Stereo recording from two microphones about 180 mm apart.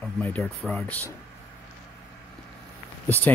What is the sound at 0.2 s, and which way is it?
Speech, 10° left (ahead or behind).